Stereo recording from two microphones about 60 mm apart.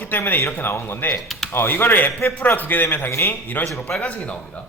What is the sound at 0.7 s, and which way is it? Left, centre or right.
Speech, left.